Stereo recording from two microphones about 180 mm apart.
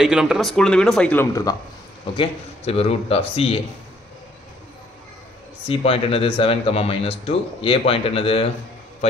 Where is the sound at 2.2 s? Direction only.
35° left (ahead or behind).